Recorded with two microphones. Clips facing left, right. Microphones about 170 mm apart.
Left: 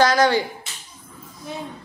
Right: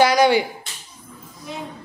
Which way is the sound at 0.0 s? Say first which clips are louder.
Right 2 dB; 10° right (ahead or behind).